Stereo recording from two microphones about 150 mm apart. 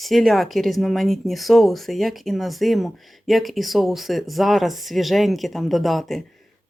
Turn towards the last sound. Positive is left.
turn(degrees=0)  # may be behind; listen again after turning